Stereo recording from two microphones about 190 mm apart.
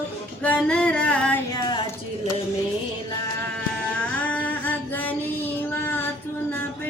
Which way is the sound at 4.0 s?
5° left (ahead or behind).